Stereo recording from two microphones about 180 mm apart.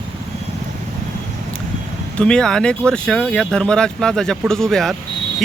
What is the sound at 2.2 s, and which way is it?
Speech, 5° left (ahead or behind).